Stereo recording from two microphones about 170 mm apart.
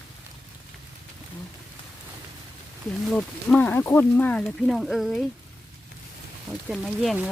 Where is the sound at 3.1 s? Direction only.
5° left (ahead or behind).